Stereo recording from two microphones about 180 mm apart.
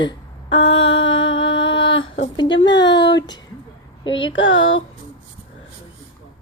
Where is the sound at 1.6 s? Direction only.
30° left (ahead or behind).